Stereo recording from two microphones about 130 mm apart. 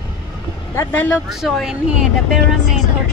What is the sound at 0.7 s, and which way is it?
Speech, 15° left (ahead or behind).